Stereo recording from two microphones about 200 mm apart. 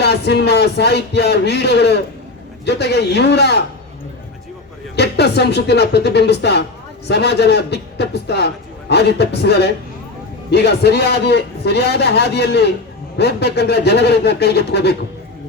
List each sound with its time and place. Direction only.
0.0 s a man's voice: 55° left (ahead or behind)
4.9 s a man's voice: 55° left (ahead or behind)